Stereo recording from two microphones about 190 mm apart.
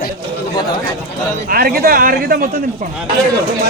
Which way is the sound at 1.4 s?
50° right (ahead or behind).